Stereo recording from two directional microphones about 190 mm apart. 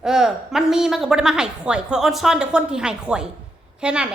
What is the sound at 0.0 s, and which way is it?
A woman's voice, 5° right (ahead or behind).